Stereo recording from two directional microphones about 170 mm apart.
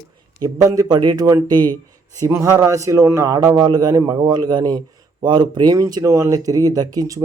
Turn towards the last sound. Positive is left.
turn(degrees=-20)  # may be behind; listen again after turning